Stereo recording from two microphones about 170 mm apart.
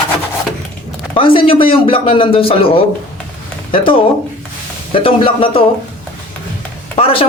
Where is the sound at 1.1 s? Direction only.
30° left (ahead or behind).